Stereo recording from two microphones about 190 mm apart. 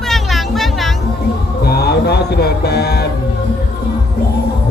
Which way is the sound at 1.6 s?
55° left (ahead or behind).